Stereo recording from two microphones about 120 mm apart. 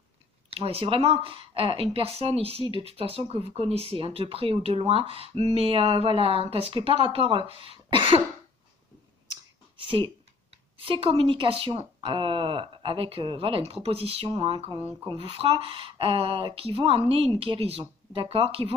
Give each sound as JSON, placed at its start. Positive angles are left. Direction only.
{"t": 0.5, "sound": "speech", "side_deg": -55}
{"t": 9.8, "sound": "speech", "side_deg": -45}